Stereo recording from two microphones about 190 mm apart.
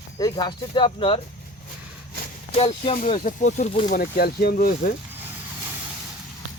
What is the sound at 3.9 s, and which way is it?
Speech, 55° left (ahead or behind).